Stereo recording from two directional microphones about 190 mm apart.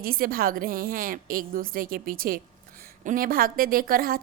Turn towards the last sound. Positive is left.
turn(degrees=-50)  # may be behind; listen again after turning